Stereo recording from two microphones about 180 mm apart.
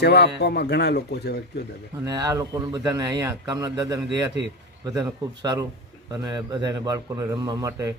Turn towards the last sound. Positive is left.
turn(degrees=-15)  # may be behind; listen again after turning